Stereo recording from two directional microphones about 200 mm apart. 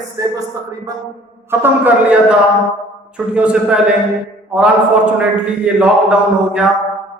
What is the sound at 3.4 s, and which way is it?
A man's voice, 5° right (ahead or behind).